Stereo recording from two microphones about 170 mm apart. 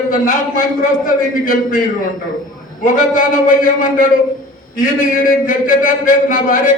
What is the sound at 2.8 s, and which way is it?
A man's voice, 50° left (ahead or behind).